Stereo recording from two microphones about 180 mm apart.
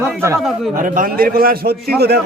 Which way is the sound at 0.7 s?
50° right (ahead or behind).